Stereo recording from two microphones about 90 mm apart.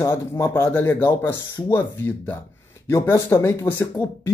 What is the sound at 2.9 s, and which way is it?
Speech, 30° left (ahead or behind).